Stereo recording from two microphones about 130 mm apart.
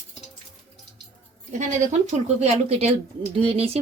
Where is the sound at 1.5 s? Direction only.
70° right (ahead or behind).